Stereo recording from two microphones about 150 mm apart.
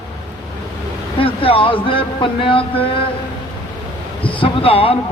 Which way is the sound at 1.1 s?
35° left (ahead or behind).